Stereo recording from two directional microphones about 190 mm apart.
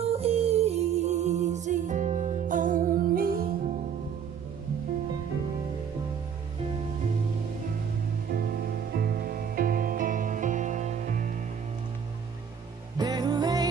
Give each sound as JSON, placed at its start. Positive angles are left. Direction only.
{"t": 0.0, "sound": "music", "side_deg": -30}
{"t": 8.3, "sound": "music", "side_deg": -55}
{"t": 12.9, "sound": "music", "side_deg": -20}